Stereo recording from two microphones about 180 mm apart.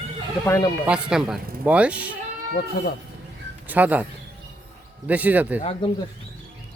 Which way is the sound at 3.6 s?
10° right (ahead or behind).